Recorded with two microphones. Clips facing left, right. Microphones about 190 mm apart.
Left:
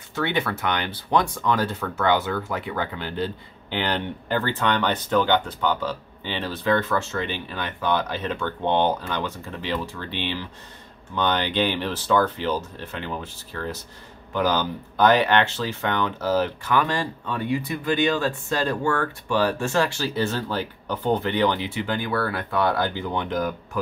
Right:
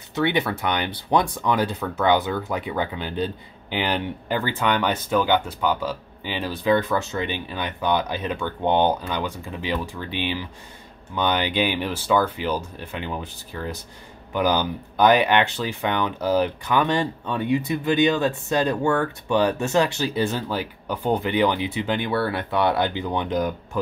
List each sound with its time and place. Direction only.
0.1 s speech: 20° right (ahead or behind)